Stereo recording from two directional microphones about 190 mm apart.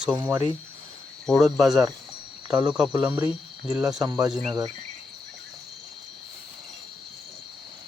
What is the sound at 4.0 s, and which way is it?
Speech, 20° right (ahead or behind).